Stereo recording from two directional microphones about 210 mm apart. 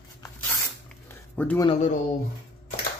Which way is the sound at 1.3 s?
10° left (ahead or behind).